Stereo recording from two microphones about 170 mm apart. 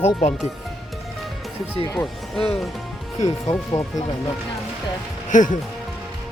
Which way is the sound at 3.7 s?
20° left (ahead or behind).